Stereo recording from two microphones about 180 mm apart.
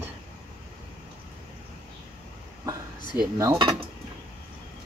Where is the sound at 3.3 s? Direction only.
20° right (ahead or behind).